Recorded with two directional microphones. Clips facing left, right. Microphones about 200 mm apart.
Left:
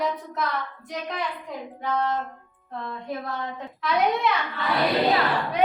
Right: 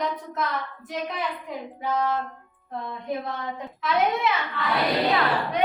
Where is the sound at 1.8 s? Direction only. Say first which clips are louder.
Even; 5° right (ahead or behind).